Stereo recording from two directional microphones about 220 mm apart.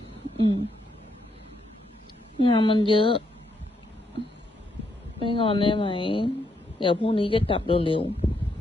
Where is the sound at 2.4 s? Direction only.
20° left (ahead or behind).